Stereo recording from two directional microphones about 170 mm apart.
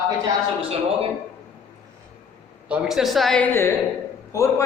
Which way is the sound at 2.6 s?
Centre (ahead or behind).